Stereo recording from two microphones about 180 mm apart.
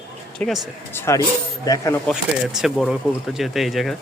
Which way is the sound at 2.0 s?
Centre (ahead or behind).